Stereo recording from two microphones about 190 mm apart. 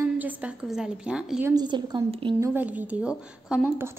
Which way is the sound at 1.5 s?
20° right (ahead or behind).